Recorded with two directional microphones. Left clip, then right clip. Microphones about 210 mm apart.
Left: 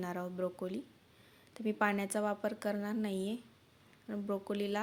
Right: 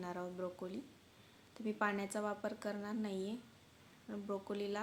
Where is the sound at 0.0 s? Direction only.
35° left (ahead or behind).